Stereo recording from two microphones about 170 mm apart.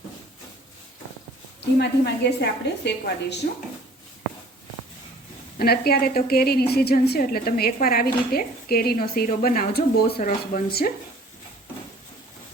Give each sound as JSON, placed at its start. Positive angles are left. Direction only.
{"t": 1.8, "sound": "a woman's voice", "side_deg": 85}
{"t": 5.5, "sound": "a woman's voice", "side_deg": 65}